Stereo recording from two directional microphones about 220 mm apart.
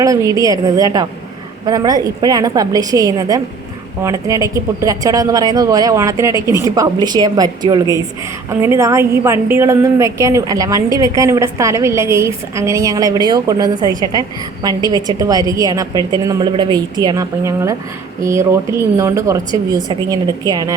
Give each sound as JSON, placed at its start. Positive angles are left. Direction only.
{"t": 0.0, "sound": "a woman's voice", "side_deg": -15}